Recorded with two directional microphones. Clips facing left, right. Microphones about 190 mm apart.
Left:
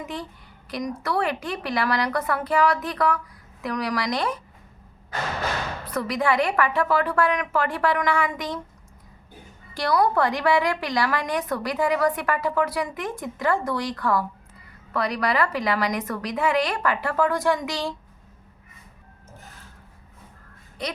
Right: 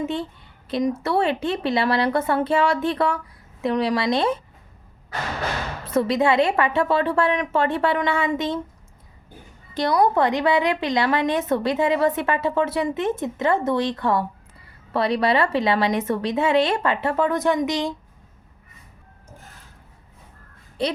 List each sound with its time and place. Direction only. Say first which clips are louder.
0.0 s a woman's voice: right 7 dB; 25° right (ahead or behind)
5.8 s a woman's voice: right 6 dB; 25° right (ahead or behind)
9.7 s a woman's voice: right 2 dB; 20° right (ahead or behind)
20.8 s a woman's voice: right 7 dB; 30° right (ahead or behind)